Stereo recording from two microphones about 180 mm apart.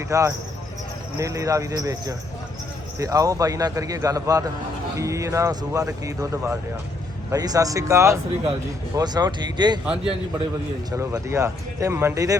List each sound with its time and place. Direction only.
0.1 s speech: 15° right (ahead or behind)
9.8 s a man's voice: 5° right (ahead or behind)
10.9 s speech: 15° right (ahead or behind)